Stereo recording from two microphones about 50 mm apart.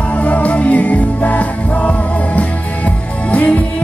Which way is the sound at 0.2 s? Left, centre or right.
Left.